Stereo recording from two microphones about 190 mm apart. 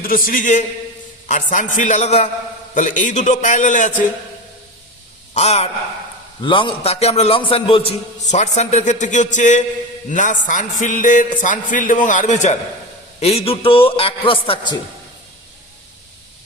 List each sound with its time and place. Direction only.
0.0 s a man's voice: 50° left (ahead or behind)
5.3 s a man's voice: 35° left (ahead or behind)